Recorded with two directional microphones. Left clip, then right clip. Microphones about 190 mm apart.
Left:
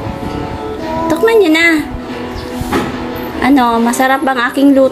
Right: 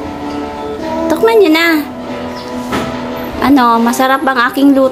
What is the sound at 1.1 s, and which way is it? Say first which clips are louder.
Speech: right 1 dB; 10° right (ahead or behind).